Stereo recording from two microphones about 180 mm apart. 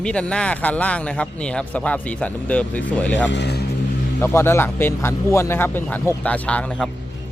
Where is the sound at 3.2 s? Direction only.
70° left (ahead or behind).